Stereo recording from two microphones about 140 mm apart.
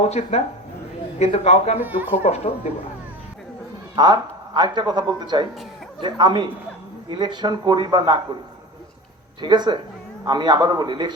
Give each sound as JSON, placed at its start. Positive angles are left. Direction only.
{"t": 0.0, "sound": "a man's voice", "side_deg": 50}
{"t": 1.8, "sound": "speech", "side_deg": -15}
{"t": 2.2, "sound": "a man's voice", "side_deg": 50}
{"t": 3.9, "sound": "speech", "side_deg": -30}
{"t": 9.4, "sound": "speech", "side_deg": -30}